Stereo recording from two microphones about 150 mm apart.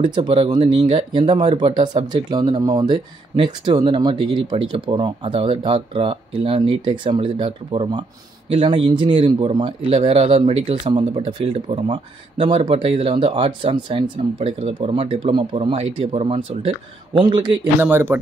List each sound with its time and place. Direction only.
0.0 s a man's voice: 35° right (ahead or behind)
17.7 s speech: 15° right (ahead or behind)